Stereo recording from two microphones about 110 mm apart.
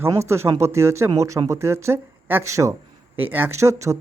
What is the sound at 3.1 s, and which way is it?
Speech, 15° right (ahead or behind).